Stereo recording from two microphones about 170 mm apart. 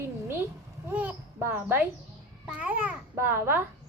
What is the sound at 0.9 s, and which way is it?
A child's voice, 10° right (ahead or behind).